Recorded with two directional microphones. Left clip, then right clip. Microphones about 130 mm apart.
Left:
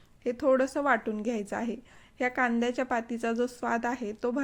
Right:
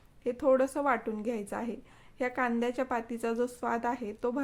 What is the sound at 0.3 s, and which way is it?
A woman's voice, 20° left (ahead or behind).